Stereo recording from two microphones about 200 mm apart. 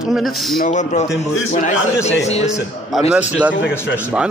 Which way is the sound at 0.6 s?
35° left (ahead or behind).